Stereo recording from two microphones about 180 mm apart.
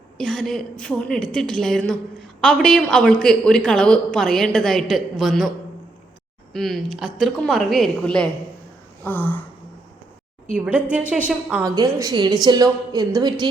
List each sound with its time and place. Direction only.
0.2 s a woman's voice: 5° left (ahead or behind)
6.5 s a woman's voice: centre (ahead or behind)
9.0 s a sound: 10° left (ahead or behind)
11.3 s a woman's voice: 5° right (ahead or behind)
11.6 s a woman's voice: 20° right (ahead or behind)